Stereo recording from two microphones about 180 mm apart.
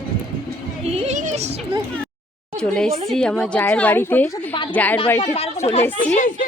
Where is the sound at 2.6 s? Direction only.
5° left (ahead or behind).